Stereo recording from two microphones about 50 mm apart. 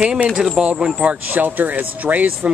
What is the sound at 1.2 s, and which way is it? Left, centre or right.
Speech, right.